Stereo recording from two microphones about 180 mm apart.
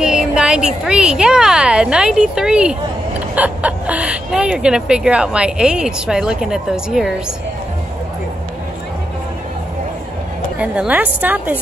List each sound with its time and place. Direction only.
0.0 s speech: 5° right (ahead or behind)
10.6 s a woman's voice: 5° right (ahead or behind)